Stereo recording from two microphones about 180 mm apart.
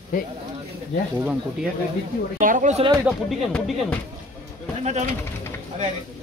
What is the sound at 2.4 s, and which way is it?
Speech, 45° right (ahead or behind).